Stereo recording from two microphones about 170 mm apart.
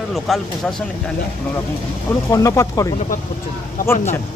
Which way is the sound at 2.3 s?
20° left (ahead or behind).